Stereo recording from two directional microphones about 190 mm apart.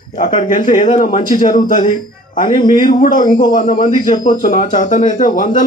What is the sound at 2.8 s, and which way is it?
Speech, 45° left (ahead or behind).